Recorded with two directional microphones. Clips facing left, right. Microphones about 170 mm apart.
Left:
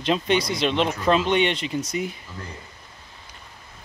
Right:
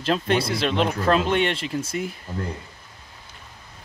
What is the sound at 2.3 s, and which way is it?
Speech, 50° right (ahead or behind).